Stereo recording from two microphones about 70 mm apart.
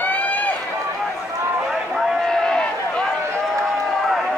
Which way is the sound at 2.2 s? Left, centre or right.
Centre.